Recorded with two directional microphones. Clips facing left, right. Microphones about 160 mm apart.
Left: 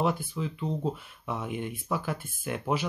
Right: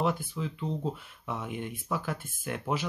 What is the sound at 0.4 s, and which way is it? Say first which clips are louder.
Speech: left 2 dB; 20° left (ahead or behind).